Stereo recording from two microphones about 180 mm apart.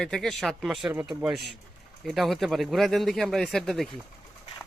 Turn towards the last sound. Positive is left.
turn(degrees=0)  # may be behind; listen again after turning